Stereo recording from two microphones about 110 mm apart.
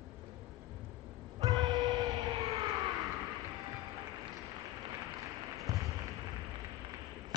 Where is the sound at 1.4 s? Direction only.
35° right (ahead or behind).